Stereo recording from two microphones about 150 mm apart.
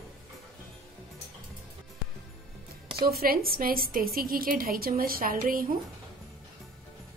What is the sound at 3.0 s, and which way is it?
A woman's voice, 90° right.